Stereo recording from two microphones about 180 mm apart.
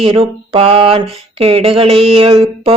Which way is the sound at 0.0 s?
30° right (ahead or behind).